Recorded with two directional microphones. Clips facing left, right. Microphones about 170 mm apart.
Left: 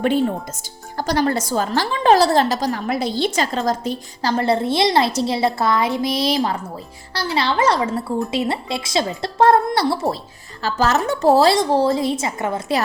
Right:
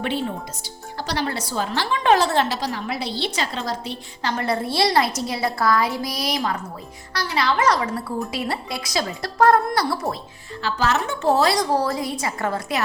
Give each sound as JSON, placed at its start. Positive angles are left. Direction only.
{"t": 0.9, "sound": "a woman's voice", "side_deg": 45}
{"t": 10.6, "sound": "a woman's voice", "side_deg": 40}